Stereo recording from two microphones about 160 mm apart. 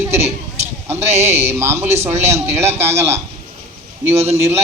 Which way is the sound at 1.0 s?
40° right (ahead or behind).